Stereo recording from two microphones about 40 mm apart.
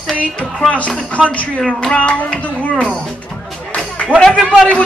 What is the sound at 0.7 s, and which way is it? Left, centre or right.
Speech, left.